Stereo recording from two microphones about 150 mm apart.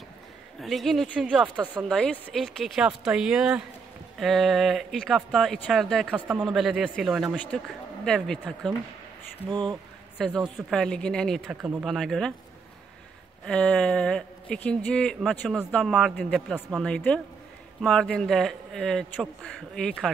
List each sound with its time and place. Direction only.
0.6 s speech: centre (ahead or behind)
6.1 s speech: 5° right (ahead or behind)
9.5 s speech: 30° right (ahead or behind)
10.4 s speech: 5° left (ahead or behind)
11.4 s speech: 10° right (ahead or behind)
11.8 s speech: centre (ahead or behind)
13.5 s speech: 5° left (ahead or behind)